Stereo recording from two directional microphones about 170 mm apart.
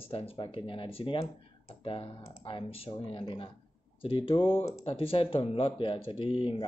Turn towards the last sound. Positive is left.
turn(degrees=35)  # may be behind; listen again after turning